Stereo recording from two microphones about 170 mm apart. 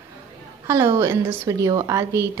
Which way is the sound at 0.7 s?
15° right (ahead or behind).